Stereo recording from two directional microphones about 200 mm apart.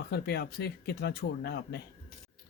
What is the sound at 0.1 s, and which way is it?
Speech, 55° left (ahead or behind).